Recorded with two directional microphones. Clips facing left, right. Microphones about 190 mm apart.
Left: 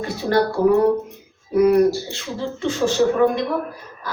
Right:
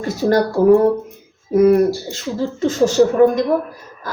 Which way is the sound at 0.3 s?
45° right (ahead or behind).